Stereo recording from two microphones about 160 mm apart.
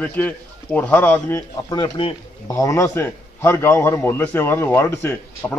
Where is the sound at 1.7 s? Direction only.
30° left (ahead or behind).